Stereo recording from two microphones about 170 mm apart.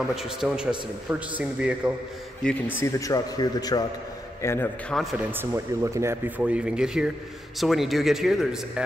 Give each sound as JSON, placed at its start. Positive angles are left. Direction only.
{"t": 0.1, "sound": "speech", "side_deg": -5}
{"t": 2.4, "sound": "speech", "side_deg": 5}
{"t": 2.8, "sound": "a man's voice", "side_deg": 20}
{"t": 5.3, "sound": "speech", "side_deg": -15}